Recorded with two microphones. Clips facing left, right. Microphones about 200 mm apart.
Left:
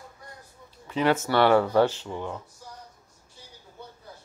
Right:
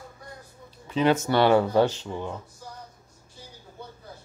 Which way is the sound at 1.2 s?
20° right (ahead or behind).